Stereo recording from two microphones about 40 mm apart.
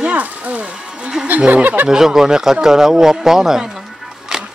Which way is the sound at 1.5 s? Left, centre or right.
Right.